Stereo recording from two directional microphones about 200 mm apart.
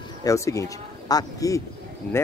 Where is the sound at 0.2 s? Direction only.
15° left (ahead or behind).